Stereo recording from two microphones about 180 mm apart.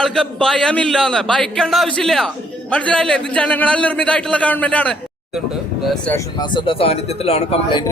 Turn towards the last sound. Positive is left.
turn(degrees=35)  # may be behind; listen again after turning